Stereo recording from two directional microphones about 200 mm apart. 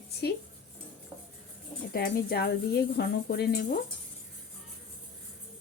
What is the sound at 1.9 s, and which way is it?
Speech, 45° left (ahead or behind).